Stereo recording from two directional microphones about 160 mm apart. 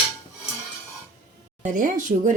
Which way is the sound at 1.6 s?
55° right (ahead or behind).